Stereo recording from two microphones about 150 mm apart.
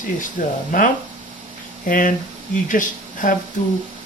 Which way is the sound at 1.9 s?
65° left (ahead or behind).